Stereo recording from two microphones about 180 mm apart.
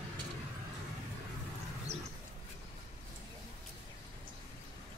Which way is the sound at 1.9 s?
35° right (ahead or behind).